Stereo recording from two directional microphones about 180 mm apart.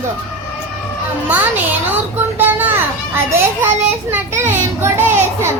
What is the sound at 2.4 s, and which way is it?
Speech, 10° right (ahead or behind).